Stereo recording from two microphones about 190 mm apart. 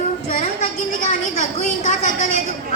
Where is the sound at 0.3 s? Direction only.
35° left (ahead or behind).